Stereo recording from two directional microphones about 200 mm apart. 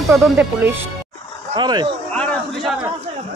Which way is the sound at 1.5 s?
20° right (ahead or behind).